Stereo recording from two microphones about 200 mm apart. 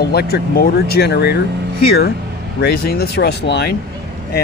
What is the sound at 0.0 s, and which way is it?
Speech, 55° left (ahead or behind).